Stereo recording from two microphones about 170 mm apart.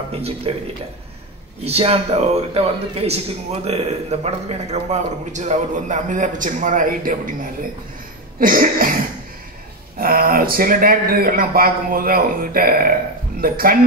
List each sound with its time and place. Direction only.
0.5 s a man's voice: 35° right (ahead or behind); by 7.3 s 50° right (ahead or behind)
8.4 s a sound: 55° right (ahead or behind)
9.9 s a man's voice: 60° right (ahead or behind)